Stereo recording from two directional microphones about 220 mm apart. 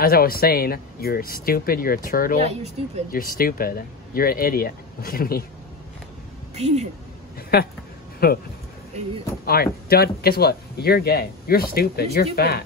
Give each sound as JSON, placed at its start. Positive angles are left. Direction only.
{"t": 0.0, "sound": "speech", "side_deg": 40}
{"t": 6.5, "sound": "speech", "side_deg": -30}
{"t": 8.2, "sound": "speech", "side_deg": 45}
{"t": 9.5, "sound": "speech", "side_deg": 45}